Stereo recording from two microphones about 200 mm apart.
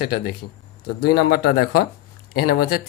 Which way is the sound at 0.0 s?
50° left (ahead or behind).